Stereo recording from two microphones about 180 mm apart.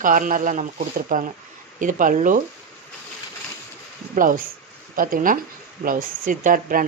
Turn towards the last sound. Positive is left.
turn(degrees=-50)  # may be behind; listen again after turning